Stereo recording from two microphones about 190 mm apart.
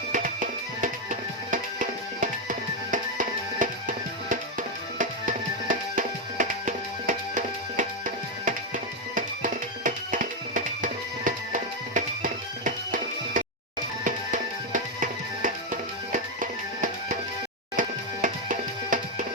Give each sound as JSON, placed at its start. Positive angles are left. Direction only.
{"t": 0.1, "sound": "music", "side_deg": -45}